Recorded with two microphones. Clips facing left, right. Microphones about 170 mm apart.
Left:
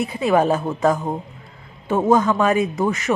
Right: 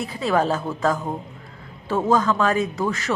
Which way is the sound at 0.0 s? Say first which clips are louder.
Left 4 dB; 20° left (ahead or behind).